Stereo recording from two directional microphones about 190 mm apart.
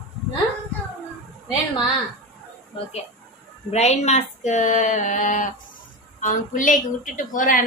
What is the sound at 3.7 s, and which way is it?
A woman's voice, 35° left (ahead or behind).